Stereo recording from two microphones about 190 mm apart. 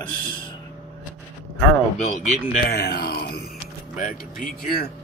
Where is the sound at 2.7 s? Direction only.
55° left (ahead or behind).